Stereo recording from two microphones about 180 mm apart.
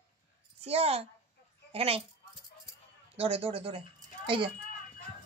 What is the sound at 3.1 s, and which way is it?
A woman's voice, 35° right (ahead or behind).